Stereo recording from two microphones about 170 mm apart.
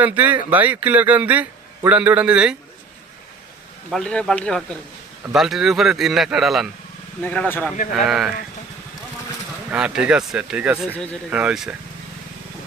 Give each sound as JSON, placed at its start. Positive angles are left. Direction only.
{"t": 0.0, "sound": "a man's voice", "side_deg": -10}
{"t": 3.9, "sound": "a man's voice", "side_deg": 5}
{"t": 7.2, "sound": "speech", "side_deg": 10}
{"t": 8.0, "sound": "a man's voice", "side_deg": 0}
{"t": 9.7, "sound": "a man's voice", "side_deg": -5}